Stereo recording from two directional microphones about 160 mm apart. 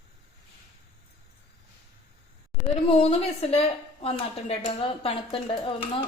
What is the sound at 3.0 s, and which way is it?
A woman's voice, 35° left (ahead or behind).